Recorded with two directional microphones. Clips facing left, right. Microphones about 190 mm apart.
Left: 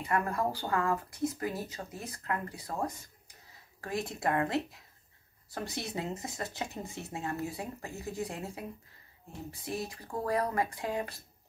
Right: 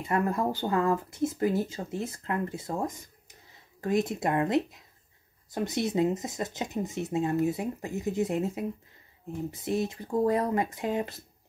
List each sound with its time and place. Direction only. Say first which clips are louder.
0.0 s speech: right 4 dB; 25° right (ahead or behind)